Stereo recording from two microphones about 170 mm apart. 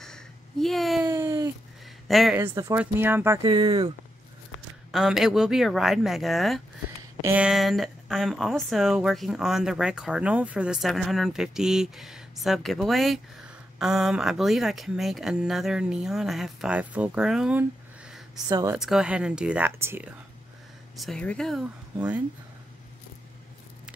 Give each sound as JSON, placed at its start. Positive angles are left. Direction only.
{"t": 0.0, "sound": "a sound", "side_deg": 5}
{"t": 1.0, "sound": "a sound", "side_deg": -15}
{"t": 2.0, "sound": "speech", "side_deg": 0}
{"t": 2.3, "sound": "speech", "side_deg": -15}
{"t": 3.4, "sound": "speech", "side_deg": -25}
{"t": 4.9, "sound": "speech", "side_deg": 0}
{"t": 7.0, "sound": "speech", "side_deg": -15}
{"t": 18.5, "sound": "speech", "side_deg": -20}
{"t": 18.8, "sound": "speech", "side_deg": -5}
{"t": 21.0, "sound": "speech", "side_deg": 5}